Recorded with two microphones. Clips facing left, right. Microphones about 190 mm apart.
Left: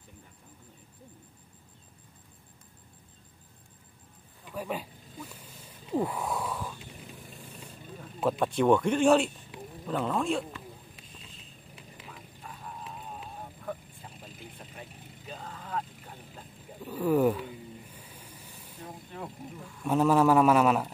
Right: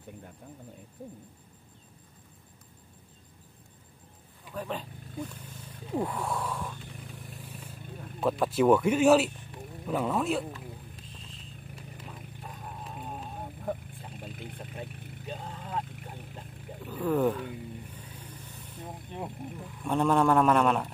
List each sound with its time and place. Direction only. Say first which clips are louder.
4.6 s speech: left 1 dB; 10° left (ahead or behind)
5.3 s wild animals: right 3 dB; 10° left (ahead or behind)
9.8 s speech: right 1 dB; 10° right (ahead or behind)
16.8 s wild animals: left 2 dB; 10° left (ahead or behind)
17.9 s vehicle: right 3 dB; 10° left (ahead or behind)
19.8 s a sound: left 2 dB; 5° left (ahead or behind)